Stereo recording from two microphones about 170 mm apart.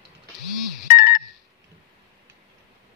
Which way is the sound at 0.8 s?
55° left (ahead or behind).